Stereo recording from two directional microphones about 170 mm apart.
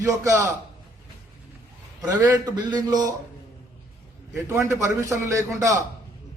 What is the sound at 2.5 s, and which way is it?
Speech, 25° right (ahead or behind).